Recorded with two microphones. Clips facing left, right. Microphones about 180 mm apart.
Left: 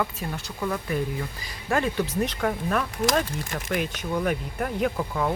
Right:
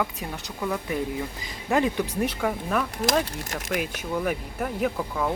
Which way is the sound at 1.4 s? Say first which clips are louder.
Right 2 dB; 15° right (ahead or behind).